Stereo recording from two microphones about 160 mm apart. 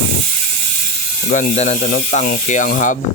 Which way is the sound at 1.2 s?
45° left (ahead or behind).